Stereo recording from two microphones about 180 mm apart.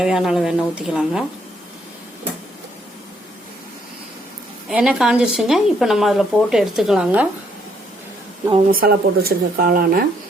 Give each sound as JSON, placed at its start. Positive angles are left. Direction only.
{"t": 0.0, "sound": "a woman's voice", "side_deg": -5}
{"t": 4.7, "sound": "a woman's voice", "side_deg": -5}
{"t": 8.7, "sound": "speech", "side_deg": -55}